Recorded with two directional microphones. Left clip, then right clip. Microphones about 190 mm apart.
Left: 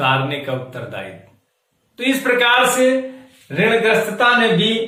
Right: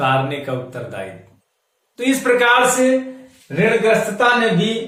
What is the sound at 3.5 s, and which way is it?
Speech, 10° right (ahead or behind).